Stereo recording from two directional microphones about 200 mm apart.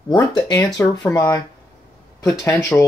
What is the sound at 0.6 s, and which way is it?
Speech, 10° left (ahead or behind).